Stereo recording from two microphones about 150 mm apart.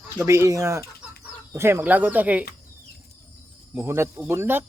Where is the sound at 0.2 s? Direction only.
20° right (ahead or behind).